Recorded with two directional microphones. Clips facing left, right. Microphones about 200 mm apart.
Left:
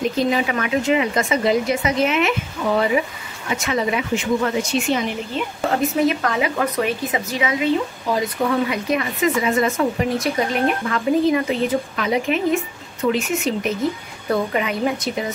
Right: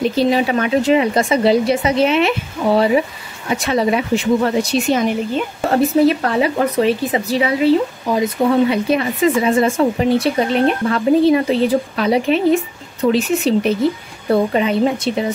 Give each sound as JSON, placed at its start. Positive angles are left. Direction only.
{"t": 0.0, "sound": "speech", "side_deg": -30}